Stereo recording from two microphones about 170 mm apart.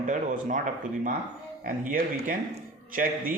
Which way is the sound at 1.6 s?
55° right (ahead or behind).